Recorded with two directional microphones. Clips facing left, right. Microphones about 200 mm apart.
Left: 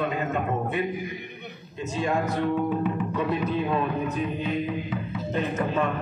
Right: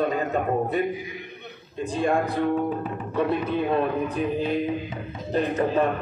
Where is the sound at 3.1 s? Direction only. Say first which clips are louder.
Right 6 dB; 30° right (ahead or behind).